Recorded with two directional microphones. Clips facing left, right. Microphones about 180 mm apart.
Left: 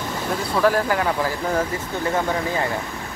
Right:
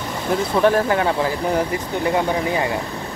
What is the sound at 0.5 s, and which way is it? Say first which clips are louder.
Speech: right 2 dB; 25° right (ahead or behind).